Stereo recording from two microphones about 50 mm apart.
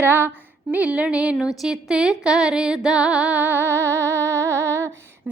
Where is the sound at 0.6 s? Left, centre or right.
Right.